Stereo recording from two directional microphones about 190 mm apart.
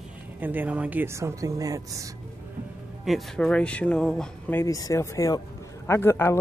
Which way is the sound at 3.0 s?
Centre (ahead or behind).